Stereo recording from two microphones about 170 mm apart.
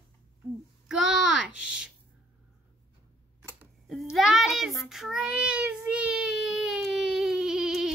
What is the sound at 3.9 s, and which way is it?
Speech, centre (ahead or behind).